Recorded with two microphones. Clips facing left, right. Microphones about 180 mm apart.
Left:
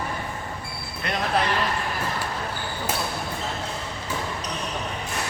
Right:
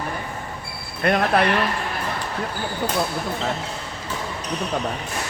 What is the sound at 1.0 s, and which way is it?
Speech, 60° right (ahead or behind).